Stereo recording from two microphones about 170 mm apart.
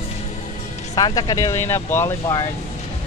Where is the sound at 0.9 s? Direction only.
20° left (ahead or behind).